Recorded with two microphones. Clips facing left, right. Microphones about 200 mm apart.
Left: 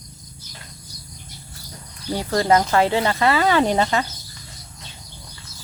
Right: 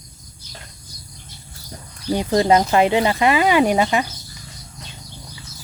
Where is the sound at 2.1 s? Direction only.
20° right (ahead or behind).